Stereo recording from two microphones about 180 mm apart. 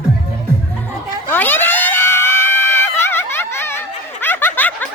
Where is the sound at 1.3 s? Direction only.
10° left (ahead or behind).